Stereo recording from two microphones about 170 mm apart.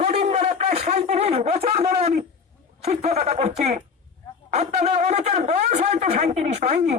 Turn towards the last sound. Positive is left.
turn(degrees=-40)  # may be behind; listen again after turning